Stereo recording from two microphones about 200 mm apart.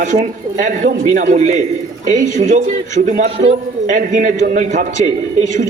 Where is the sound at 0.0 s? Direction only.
40° right (ahead or behind).